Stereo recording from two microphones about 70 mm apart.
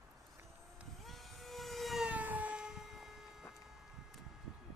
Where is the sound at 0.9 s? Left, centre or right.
Centre.